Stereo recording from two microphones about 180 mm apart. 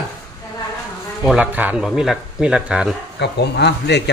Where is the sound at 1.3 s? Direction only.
10° right (ahead or behind).